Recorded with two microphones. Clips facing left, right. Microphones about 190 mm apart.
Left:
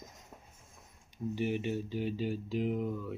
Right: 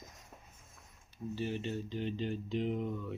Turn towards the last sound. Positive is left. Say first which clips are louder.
# left 2 dB
turn(degrees=0)  # may be behind; listen again after turning